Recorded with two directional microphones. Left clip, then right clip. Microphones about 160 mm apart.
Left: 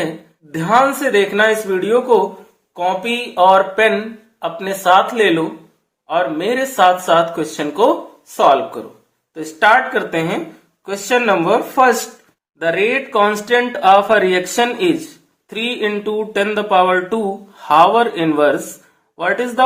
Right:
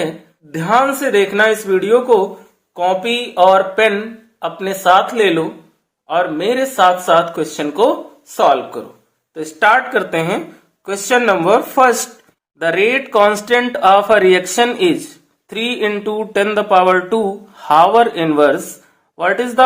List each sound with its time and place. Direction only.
0.5 s speech: 20° right (ahead or behind)